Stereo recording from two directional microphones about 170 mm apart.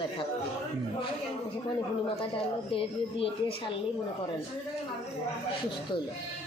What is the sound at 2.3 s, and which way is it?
Speech, 30° left (ahead or behind).